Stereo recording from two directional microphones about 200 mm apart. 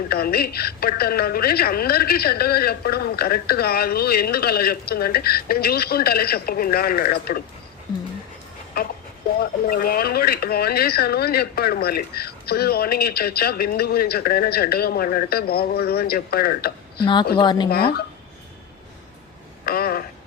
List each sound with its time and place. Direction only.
0.1 s speech: 50° left (ahead or behind)
9.4 s speech: 45° left (ahead or behind)
17.4 s speech: 20° left (ahead or behind)
17.7 s speech: 50° left (ahead or behind)
19.6 s a sound: 50° left (ahead or behind)